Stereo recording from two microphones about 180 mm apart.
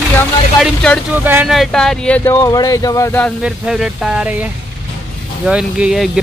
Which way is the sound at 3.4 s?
5° right (ahead or behind).